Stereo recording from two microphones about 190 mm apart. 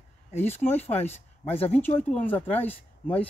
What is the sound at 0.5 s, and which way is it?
Speech, 35° left (ahead or behind).